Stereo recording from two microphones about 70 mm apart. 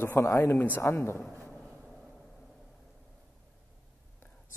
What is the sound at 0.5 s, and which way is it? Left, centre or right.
Speech, left.